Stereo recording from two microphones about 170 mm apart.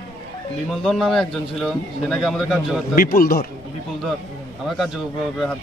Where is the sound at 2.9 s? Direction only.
55° left (ahead or behind).